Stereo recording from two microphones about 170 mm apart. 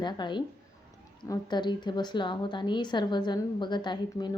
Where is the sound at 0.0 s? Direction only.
25° left (ahead or behind).